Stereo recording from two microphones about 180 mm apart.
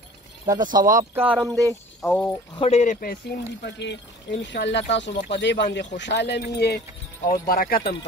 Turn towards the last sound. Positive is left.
turn(degrees=55)  # may be behind; listen again after turning